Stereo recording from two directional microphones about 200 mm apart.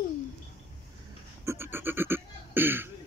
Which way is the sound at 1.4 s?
15° right (ahead or behind).